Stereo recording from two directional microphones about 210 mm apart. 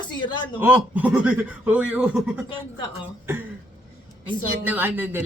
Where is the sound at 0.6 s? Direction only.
10° right (ahead or behind).